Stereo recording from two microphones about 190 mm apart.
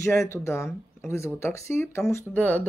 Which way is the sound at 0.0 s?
15° left (ahead or behind).